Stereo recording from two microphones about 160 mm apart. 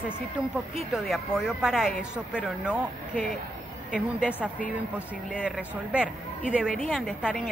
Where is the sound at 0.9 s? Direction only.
Centre (ahead or behind).